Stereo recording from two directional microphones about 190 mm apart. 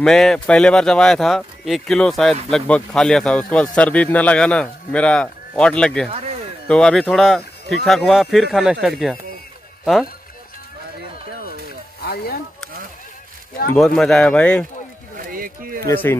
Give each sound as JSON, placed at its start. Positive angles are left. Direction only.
{"t": 0.0, "sound": "a man's voice", "side_deg": 5}
{"t": 6.0, "sound": "speech", "side_deg": -35}
{"t": 6.7, "sound": "a man's voice", "side_deg": 5}
{"t": 12.0, "sound": "speech", "side_deg": 55}
{"t": 13.7, "sound": "a man's voice", "side_deg": 0}
{"t": 15.1, "sound": "a sound", "side_deg": -50}
{"t": 15.9, "sound": "speech", "side_deg": 10}